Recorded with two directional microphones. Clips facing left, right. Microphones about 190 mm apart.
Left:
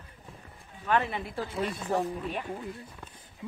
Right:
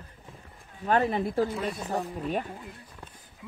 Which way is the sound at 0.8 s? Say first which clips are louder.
Right 4 dB; 40° right (ahead or behind).